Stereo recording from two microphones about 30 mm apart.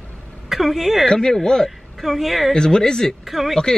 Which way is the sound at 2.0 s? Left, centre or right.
Centre.